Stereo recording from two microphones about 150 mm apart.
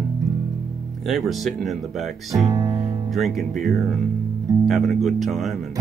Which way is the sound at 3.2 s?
Centre (ahead or behind).